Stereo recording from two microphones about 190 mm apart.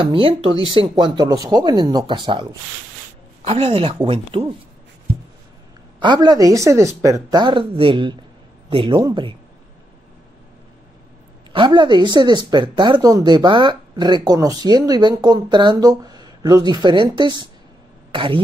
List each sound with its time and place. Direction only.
0.0 s speech: 25° right (ahead or behind)
3.4 s speech: 30° right (ahead or behind)
5.9 s speech: 25° right (ahead or behind)
11.5 s speech: 25° right (ahead or behind)